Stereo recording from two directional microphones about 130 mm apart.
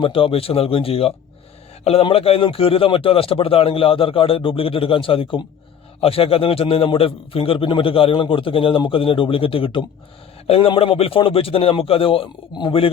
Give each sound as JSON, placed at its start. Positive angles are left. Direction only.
{"t": 0.0, "sound": "a man's voice", "side_deg": 45}